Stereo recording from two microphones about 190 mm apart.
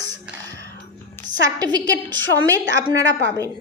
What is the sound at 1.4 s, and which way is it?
A woman's voice, 20° right (ahead or behind).